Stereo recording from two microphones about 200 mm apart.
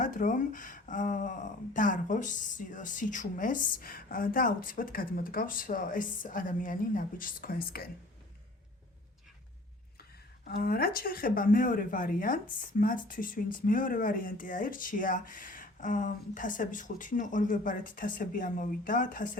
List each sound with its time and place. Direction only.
0.0 s speech: 40° left (ahead or behind)
10.4 s speech: 45° left (ahead or behind)